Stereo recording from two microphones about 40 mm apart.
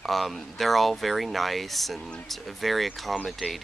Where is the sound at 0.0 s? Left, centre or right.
Centre.